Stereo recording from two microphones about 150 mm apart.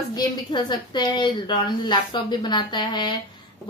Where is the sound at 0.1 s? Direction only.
30° left (ahead or behind).